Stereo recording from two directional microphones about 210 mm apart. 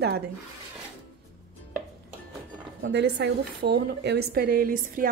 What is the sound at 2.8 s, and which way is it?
A woman's voice, 55° right (ahead or behind).